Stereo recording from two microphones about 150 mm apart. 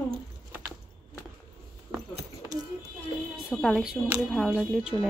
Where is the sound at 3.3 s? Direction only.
Centre (ahead or behind).